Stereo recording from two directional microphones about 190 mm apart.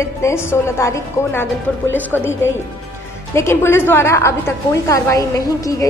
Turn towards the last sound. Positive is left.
turn(degrees=15)  # may be behind; listen again after turning